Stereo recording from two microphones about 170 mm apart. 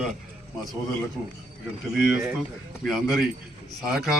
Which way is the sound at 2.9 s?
Centre (ahead or behind).